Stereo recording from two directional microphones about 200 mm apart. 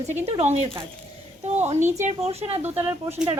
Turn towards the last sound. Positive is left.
turn(degrees=-10)  # may be behind; listen again after turning